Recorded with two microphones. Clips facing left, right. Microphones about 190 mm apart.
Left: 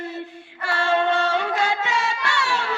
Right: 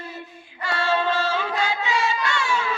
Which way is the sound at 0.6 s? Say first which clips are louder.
Left 2 dB; 65° left (ahead or behind).